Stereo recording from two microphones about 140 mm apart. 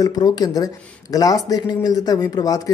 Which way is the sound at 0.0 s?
25° left (ahead or behind).